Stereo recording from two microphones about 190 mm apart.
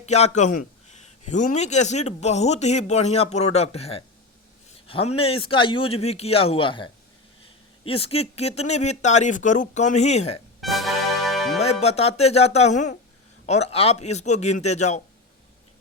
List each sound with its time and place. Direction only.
0.0 s a man's voice: 35° left (ahead or behind)
10.6 s music: centre (ahead or behind)
11.6 s a man's voice: 35° left (ahead or behind)